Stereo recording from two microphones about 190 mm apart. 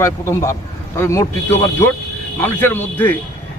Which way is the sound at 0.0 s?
15° left (ahead or behind).